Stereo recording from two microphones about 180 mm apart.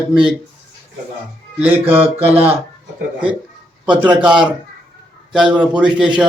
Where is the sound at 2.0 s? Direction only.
35° right (ahead or behind).